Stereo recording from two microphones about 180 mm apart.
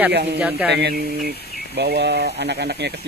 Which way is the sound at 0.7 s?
70° right (ahead or behind).